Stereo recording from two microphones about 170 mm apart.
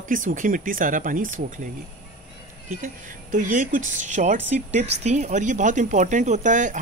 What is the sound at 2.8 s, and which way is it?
A woman's voice, 50° right (ahead or behind).